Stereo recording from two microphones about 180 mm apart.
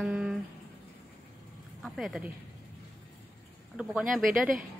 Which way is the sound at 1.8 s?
Centre (ahead or behind).